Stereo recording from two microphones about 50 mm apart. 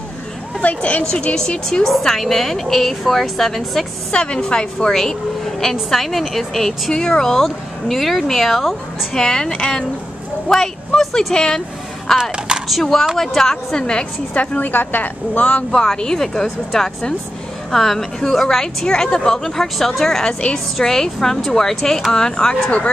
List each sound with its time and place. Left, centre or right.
0.6 s a woman's voice: left
1.1 s a woman's voice: centre
4.1 s a woman's voice: centre
5.6 s a woman's voice: centre
6.9 s a woman's voice: centre
9.1 s a woman's voice: centre
12.2 s speech: centre
13.2 s a woman's voice: centre
14.6 s a woman's voice: left
15.8 s a woman's voice: centre